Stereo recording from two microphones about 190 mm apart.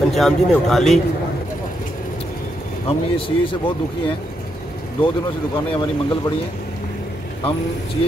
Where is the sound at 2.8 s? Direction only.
30° left (ahead or behind).